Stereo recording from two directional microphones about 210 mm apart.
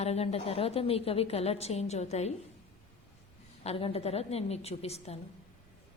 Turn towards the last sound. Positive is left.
turn(degrees=30)  # may be behind; listen again after turning